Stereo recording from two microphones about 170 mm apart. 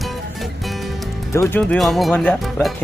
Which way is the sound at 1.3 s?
10° left (ahead or behind).